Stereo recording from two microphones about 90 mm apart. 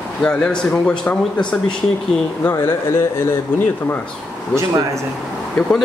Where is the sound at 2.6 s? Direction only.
30° left (ahead or behind).